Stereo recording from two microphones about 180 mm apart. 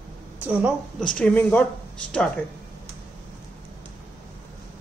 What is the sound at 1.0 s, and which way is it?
Speech, 5° left (ahead or behind).